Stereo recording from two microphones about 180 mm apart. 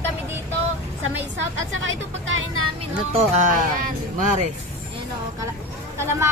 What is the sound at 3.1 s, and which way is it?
Speech, 40° right (ahead or behind).